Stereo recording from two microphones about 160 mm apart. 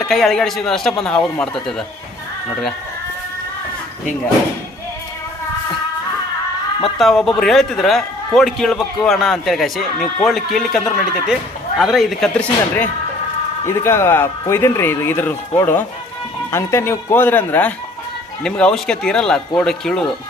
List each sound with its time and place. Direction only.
0.0 s a man's voice: centre (ahead or behind)
7.0 s a man's voice: centre (ahead or behind)